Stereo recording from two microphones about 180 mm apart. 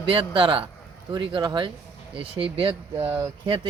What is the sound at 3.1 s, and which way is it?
Speech, 20° right (ahead or behind).